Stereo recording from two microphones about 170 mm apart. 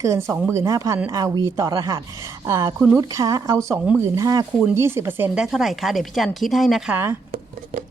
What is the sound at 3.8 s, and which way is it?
Speech, 5° right (ahead or behind).